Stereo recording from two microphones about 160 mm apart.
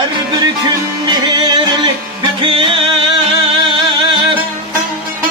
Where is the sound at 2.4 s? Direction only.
35° right (ahead or behind).